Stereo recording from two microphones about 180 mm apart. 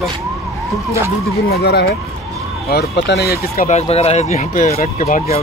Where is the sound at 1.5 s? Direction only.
60° left (ahead or behind).